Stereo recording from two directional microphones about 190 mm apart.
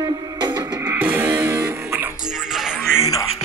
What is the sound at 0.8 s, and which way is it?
Music, 10° right (ahead or behind).